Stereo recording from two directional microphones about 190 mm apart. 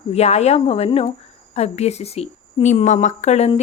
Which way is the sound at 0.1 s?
35° left (ahead or behind).